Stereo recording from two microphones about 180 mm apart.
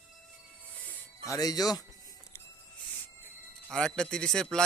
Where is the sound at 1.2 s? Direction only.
20° left (ahead or behind).